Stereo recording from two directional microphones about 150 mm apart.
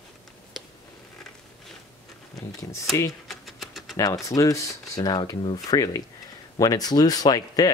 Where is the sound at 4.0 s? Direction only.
20° left (ahead or behind).